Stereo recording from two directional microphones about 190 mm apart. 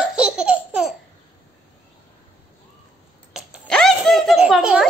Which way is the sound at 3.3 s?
Centre (ahead or behind).